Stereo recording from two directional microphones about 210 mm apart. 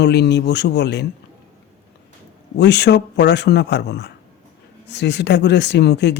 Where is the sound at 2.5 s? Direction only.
55° left (ahead or behind).